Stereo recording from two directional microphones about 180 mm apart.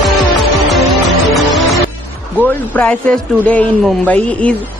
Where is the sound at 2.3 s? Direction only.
10° left (ahead or behind).